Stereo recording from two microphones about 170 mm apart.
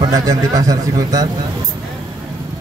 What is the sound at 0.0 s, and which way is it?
A man's voice, 20° right (ahead or behind).